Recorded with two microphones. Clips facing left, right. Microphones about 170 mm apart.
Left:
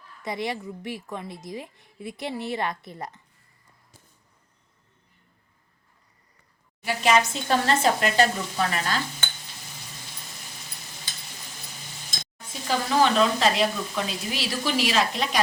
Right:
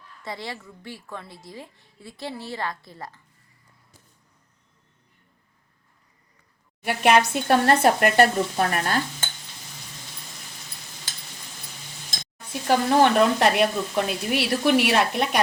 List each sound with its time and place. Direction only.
0.2 s a woman's voice: 20° left (ahead or behind)
6.8 s sizzle: 60° right (ahead or behind)
12.6 s sizzle: 60° right (ahead or behind)